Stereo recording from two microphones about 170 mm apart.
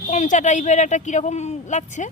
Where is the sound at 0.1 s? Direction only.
45° left (ahead or behind).